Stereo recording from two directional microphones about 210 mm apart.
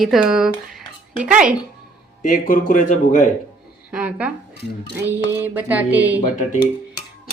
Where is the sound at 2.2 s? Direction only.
40° left (ahead or behind).